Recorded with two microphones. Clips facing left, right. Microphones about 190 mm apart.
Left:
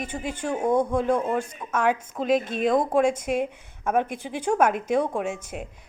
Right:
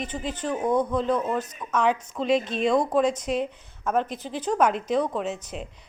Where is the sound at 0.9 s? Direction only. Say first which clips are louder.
Left 1 dB; 10° left (ahead or behind).